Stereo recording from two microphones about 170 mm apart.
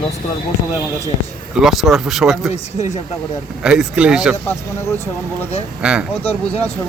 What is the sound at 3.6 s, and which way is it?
Speech, 5° right (ahead or behind).